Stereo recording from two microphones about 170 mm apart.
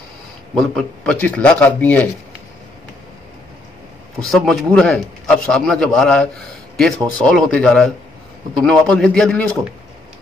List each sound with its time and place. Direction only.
0.6 s speech: 5° left (ahead or behind)
4.2 s a man's voice: centre (ahead or behind)